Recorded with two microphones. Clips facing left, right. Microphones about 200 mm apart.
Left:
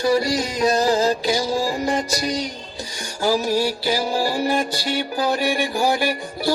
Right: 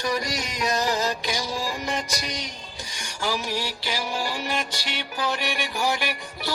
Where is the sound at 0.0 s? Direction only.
30° left (ahead or behind).